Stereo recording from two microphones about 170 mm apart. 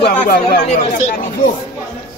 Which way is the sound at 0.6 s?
50° left (ahead or behind).